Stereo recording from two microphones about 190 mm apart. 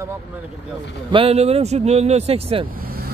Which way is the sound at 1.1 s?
30° right (ahead or behind).